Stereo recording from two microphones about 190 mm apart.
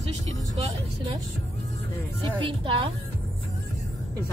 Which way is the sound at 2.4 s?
25° right (ahead or behind).